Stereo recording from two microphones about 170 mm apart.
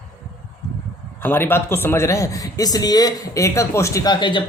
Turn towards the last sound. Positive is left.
turn(degrees=25)  # may be behind; listen again after turning